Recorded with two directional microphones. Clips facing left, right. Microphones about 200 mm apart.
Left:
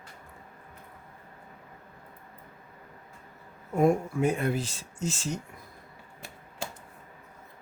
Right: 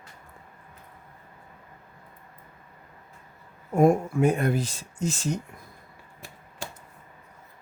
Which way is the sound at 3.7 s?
50° right (ahead or behind).